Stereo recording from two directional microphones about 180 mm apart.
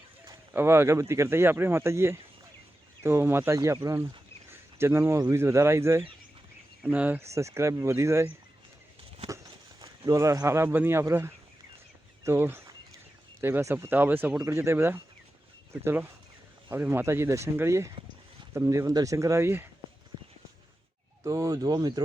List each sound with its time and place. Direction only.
0.3 s speech: 15° right (ahead or behind)
9.3 s speech: 15° right (ahead or behind)
21.2 s speech: 20° right (ahead or behind)